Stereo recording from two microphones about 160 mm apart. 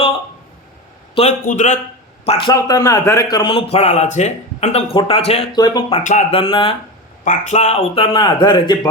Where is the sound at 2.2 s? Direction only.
40° left (ahead or behind).